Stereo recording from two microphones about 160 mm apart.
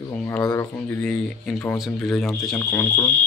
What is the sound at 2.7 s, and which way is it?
Speech, 15° left (ahead or behind).